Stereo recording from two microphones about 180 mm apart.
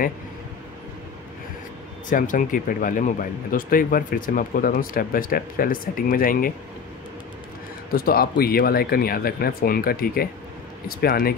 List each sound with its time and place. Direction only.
2.0 s speech: 45° left (ahead or behind)
7.9 s speech: 55° left (ahead or behind)